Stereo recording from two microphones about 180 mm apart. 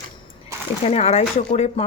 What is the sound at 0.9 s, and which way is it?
Speech, 35° left (ahead or behind).